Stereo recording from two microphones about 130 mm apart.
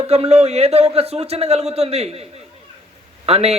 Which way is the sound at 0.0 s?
50° right (ahead or behind).